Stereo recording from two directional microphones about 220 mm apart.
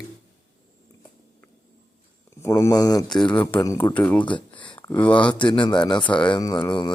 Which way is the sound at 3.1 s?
5° left (ahead or behind).